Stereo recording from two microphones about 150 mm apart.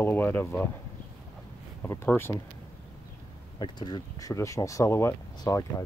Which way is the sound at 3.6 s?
30° left (ahead or behind).